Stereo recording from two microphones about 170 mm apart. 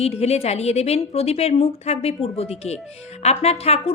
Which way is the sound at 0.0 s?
35° left (ahead or behind).